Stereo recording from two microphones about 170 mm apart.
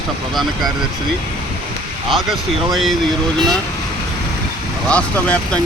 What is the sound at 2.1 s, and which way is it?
Speech, centre (ahead or behind).